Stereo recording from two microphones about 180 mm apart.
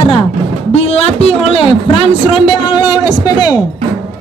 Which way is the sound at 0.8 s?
35° left (ahead or behind).